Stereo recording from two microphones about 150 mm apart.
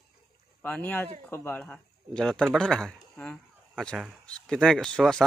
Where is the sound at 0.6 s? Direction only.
10° left (ahead or behind).